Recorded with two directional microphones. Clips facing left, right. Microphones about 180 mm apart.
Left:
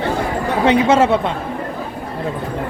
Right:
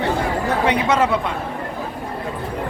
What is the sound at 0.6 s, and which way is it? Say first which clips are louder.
Speech: left 7 dB; 25° left (ahead or behind).